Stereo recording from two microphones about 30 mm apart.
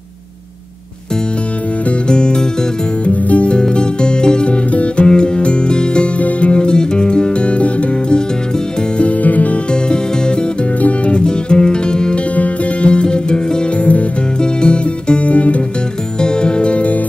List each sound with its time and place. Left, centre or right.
2.0 s music: left
3.1 s music: left
3.5 s music: left
4.5 s music: left
5.0 s music: left
6.1 s music: left
6.5 s music: left
9.2 s music: left
9.7 s music: left
10.8 s music: left
11.1 s music: left
13.7 s music: left
14.4 s music: left
16.2 s music: left